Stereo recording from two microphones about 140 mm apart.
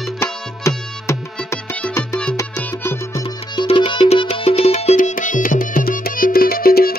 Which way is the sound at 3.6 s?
40° left (ahead or behind).